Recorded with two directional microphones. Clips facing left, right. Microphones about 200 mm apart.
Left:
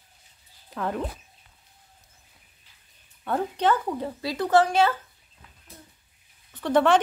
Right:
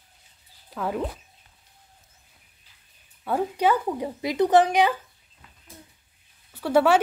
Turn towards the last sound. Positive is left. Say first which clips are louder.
# right 1 dB
turn(degrees=-5)  # may be behind; listen again after turning